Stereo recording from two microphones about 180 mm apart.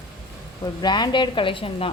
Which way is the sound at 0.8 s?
25° left (ahead or behind).